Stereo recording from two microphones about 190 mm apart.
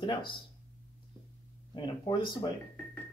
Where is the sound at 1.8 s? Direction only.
25° left (ahead or behind).